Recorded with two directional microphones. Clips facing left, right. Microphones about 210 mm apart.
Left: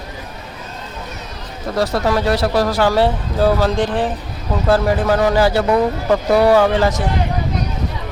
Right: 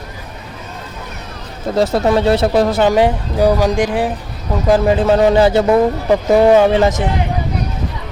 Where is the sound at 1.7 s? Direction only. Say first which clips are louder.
Right 4 dB; 25° right (ahead or behind).